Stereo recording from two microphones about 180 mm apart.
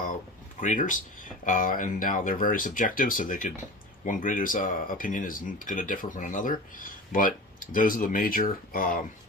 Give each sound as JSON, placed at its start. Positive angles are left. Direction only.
{"t": 0.6, "sound": "speech", "side_deg": 45}